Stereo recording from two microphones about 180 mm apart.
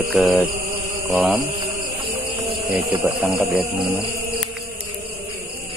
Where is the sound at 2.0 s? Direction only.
30° right (ahead or behind).